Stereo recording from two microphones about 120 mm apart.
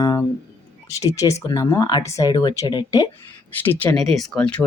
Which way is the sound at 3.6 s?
15° left (ahead or behind).